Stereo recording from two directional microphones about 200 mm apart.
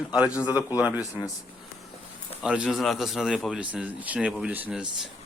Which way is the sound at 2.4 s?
5° right (ahead or behind).